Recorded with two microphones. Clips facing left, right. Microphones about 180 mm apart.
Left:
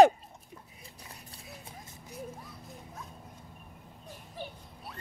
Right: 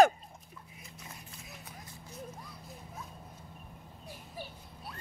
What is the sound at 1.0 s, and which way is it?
Clip-clop, 30° left (ahead or behind).